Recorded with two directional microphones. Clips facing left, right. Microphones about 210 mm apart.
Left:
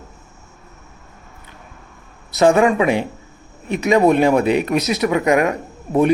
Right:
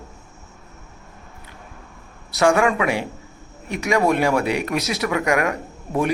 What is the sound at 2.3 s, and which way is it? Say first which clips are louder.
Speech: left 4 dB; 20° left (ahead or behind).